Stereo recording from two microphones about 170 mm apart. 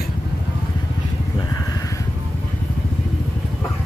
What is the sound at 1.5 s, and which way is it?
Vehicle, 20° left (ahead or behind).